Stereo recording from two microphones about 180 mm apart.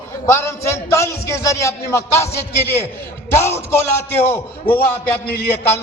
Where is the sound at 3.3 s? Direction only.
15° left (ahead or behind).